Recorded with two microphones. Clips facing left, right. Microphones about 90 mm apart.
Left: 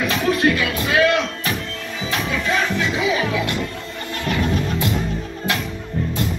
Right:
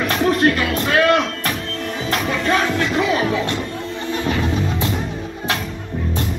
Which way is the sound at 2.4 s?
60° right (ahead or behind).